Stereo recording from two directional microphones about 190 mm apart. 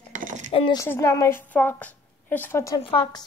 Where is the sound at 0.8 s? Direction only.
15° left (ahead or behind).